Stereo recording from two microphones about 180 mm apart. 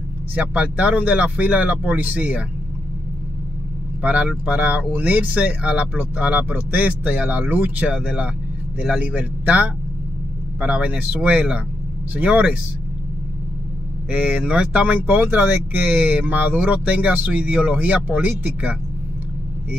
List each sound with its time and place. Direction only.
0.3 s speech: 10° right (ahead or behind)
4.0 s speech: 5° right (ahead or behind)
14.1 s speech: 5° right (ahead or behind)